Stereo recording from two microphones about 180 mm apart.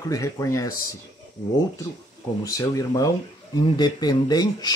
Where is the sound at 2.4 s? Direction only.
20° left (ahead or behind).